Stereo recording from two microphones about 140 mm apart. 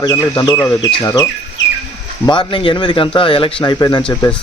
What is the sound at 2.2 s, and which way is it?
Speech, 35° left (ahead or behind).